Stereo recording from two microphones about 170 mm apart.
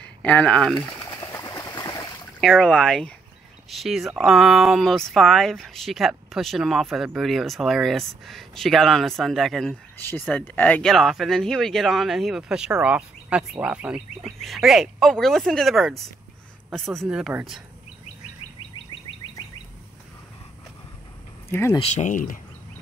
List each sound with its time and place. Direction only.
0.0 s speech: 10° left (ahead or behind)
1.2 s a sound: 20° left (ahead or behind)
2.4 s speech: centre (ahead or behind)
9.9 s speech: 10° left (ahead or behind); by 17.6 s 5° right (ahead or behind)
21.5 s speech: 15° left (ahead or behind)
21.7 s speech: 40° left (ahead or behind)